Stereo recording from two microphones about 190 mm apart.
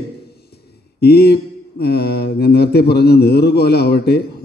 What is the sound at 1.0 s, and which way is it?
A man's voice, 55° left (ahead or behind).